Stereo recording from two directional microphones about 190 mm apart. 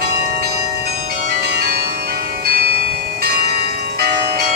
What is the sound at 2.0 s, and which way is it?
Bell, 50° right (ahead or behind).